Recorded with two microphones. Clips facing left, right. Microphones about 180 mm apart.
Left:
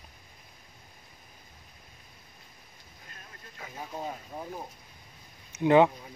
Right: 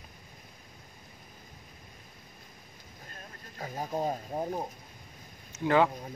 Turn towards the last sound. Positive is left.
turn(degrees=20)  # may be behind; listen again after turning